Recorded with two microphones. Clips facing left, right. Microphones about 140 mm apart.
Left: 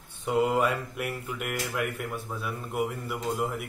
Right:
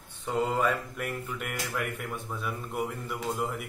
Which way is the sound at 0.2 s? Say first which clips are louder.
Left 3 dB; 10° left (ahead or behind).